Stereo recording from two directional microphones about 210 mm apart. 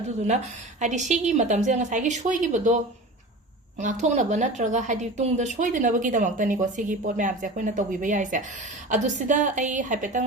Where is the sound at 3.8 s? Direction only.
35° right (ahead or behind).